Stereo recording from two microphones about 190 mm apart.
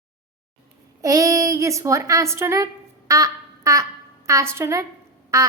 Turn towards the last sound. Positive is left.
turn(degrees=-15)  # may be behind; listen again after turning